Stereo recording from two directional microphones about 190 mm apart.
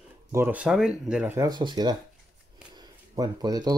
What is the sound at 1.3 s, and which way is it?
Speech, 20° right (ahead or behind).